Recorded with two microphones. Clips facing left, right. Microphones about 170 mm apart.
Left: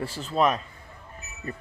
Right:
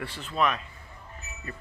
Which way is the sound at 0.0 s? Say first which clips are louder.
Left 4 dB; 40° left (ahead or behind).